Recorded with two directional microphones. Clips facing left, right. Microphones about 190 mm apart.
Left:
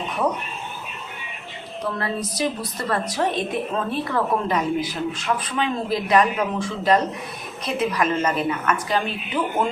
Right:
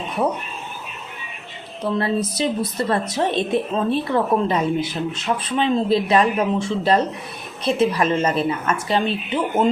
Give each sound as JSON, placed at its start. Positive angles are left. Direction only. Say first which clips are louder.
{"t": 1.8, "sound": "a woman's voice", "louder": "right 5 dB", "side_deg": -25}